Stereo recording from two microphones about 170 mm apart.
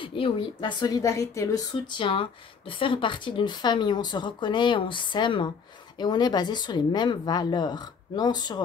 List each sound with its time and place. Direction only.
0.0 s speech: 30° left (ahead or behind)